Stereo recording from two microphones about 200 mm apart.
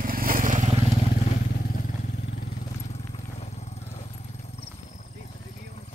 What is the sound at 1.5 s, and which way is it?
Vehicle, 45° left (ahead or behind).